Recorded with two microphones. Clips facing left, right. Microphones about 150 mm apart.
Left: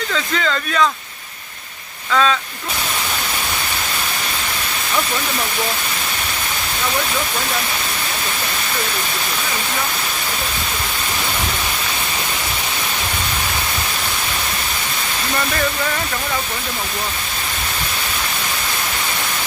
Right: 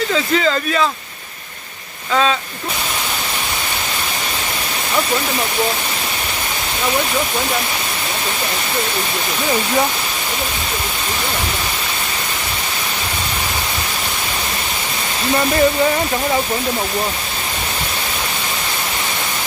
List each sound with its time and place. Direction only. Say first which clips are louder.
0.3 s speech: right 1 dB; 5° right (ahead or behind)